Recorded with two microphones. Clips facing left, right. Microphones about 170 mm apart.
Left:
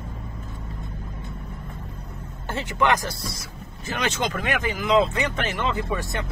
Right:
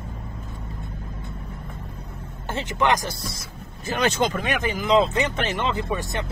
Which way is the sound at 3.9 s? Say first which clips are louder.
Right 4 dB; 35° right (ahead or behind).